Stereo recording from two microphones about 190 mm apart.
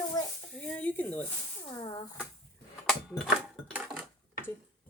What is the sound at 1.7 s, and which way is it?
Speech, 25° left (ahead or behind).